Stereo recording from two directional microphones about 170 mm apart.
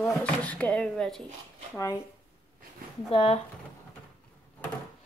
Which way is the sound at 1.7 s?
20° left (ahead or behind).